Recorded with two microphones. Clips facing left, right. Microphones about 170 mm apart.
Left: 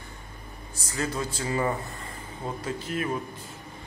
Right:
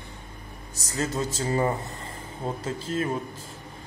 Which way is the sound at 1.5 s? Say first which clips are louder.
Right 2 dB; 35° right (ahead or behind).